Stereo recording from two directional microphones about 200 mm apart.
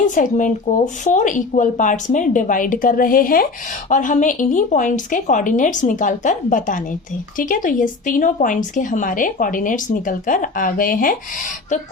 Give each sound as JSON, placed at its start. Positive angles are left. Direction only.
{"t": 0.1, "sound": "speech", "side_deg": 40}